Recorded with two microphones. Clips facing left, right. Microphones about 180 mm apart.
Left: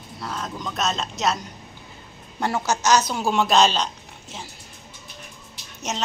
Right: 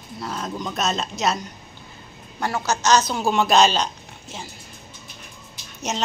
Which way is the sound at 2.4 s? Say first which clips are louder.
Left 1 dB; 20° left (ahead or behind).